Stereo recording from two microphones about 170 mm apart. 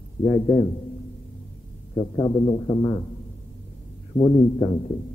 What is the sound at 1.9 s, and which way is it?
A man's voice, 30° left (ahead or behind).